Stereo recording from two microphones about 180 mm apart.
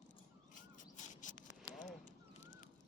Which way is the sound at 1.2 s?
45° left (ahead or behind).